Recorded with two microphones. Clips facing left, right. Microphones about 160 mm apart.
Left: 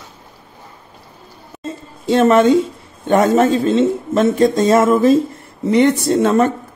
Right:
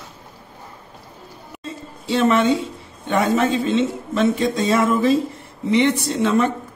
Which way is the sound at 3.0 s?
45° left (ahead or behind).